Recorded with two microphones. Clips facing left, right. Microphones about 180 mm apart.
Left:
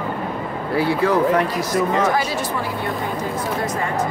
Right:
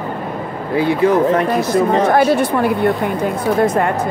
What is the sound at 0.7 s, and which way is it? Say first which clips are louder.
Speech: right 4 dB; 20° right (ahead or behind).